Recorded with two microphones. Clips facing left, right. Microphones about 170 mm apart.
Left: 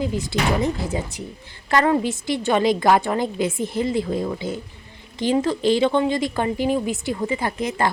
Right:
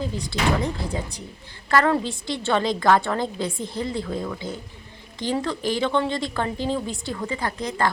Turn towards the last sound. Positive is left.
turn(degrees=20)  # may be behind; listen again after turning